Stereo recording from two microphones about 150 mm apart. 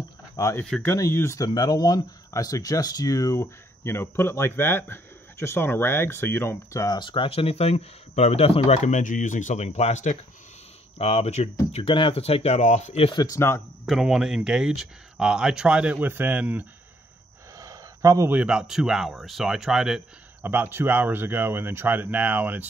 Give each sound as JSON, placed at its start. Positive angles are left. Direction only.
{"t": 0.4, "sound": "speech", "side_deg": 20}
{"t": 0.7, "sound": "speech", "side_deg": 5}
{"t": 0.9, "sound": "speech", "side_deg": 20}
{"t": 11.7, "sound": "speech", "side_deg": 35}
{"t": 13.1, "sound": "speech", "side_deg": 25}
{"t": 13.8, "sound": "speech", "side_deg": -5}
{"t": 17.6, "sound": "a sound", "side_deg": -20}
{"t": 18.4, "sound": "speech", "side_deg": -5}